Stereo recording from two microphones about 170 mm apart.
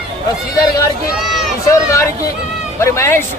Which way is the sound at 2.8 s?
15° left (ahead or behind).